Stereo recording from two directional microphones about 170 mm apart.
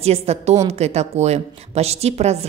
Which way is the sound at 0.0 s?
35° right (ahead or behind).